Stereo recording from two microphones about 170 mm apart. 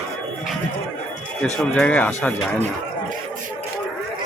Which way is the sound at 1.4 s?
5° left (ahead or behind).